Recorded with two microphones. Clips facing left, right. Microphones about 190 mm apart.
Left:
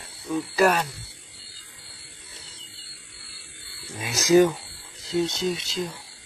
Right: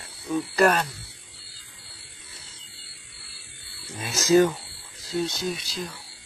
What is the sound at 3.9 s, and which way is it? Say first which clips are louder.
Speech: left 1 dB; 15° left (ahead or behind).